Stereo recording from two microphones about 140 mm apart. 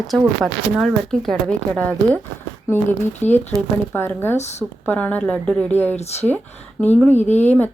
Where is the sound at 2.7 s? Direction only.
20° left (ahead or behind).